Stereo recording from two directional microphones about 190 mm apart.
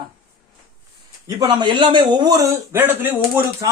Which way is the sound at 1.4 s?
20° right (ahead or behind).